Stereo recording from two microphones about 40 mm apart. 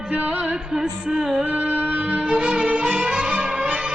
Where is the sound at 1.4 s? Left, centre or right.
Right.